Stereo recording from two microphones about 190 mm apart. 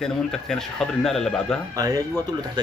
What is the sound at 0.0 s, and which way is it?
A man's voice, centre (ahead or behind).